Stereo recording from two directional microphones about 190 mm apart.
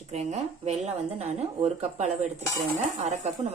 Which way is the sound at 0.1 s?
35° right (ahead or behind).